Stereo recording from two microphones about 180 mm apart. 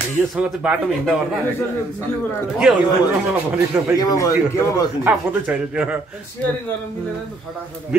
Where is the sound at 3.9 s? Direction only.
20° left (ahead or behind).